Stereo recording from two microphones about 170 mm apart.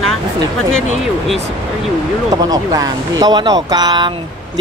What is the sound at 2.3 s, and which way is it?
A man's voice, 20° right (ahead or behind).